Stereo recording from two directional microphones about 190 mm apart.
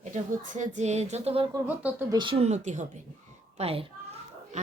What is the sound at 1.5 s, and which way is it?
Speech, 15° right (ahead or behind).